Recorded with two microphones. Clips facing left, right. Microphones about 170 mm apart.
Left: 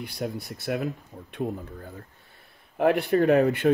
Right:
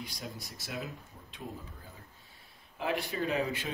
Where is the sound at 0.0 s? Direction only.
60° left (ahead or behind).